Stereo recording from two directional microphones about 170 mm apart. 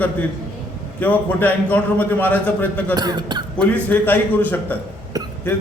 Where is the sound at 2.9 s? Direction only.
25° right (ahead or behind).